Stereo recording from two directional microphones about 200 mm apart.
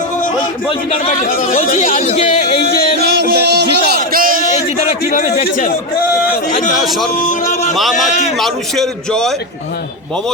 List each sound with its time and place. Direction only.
0.7 s speech: 35° left (ahead or behind)
3.0 s music: 55° right (ahead or behind)
4.4 s a sound: 35° left (ahead or behind)
5.0 s speech: 35° left (ahead or behind)
6.3 s a sound: 40° left (ahead or behind)
6.8 s a man's voice: centre (ahead or behind)
7.3 s music: 40° left (ahead or behind)
7.8 s a man's voice: centre (ahead or behind)